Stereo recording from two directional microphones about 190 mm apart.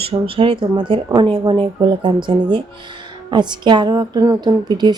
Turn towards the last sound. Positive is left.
turn(degrees=-20)  # may be behind; listen again after turning